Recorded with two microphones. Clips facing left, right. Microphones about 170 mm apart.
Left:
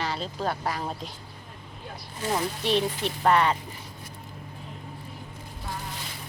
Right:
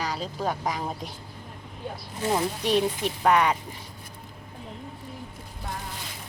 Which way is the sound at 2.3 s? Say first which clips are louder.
Right 1 dB; 10° right (ahead or behind).